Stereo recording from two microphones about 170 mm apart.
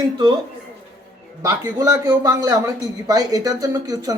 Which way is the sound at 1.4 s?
20° right (ahead or behind).